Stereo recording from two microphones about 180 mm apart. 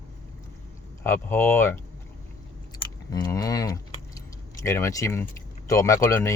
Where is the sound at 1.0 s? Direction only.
15° left (ahead or behind).